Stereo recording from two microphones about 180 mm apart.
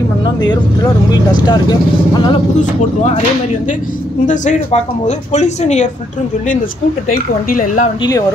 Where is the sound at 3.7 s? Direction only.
45° left (ahead or behind).